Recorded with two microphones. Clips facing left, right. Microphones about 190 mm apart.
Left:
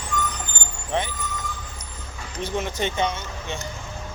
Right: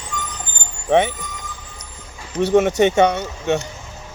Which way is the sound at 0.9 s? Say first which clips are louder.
Right 11 dB; 65° right (ahead or behind).